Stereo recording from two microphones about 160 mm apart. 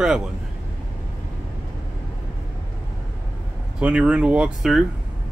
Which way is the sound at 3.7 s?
5° right (ahead or behind).